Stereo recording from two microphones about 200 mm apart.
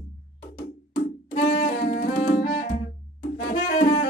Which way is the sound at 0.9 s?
40° left (ahead or behind).